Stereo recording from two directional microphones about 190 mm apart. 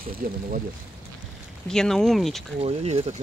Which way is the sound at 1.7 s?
5° left (ahead or behind).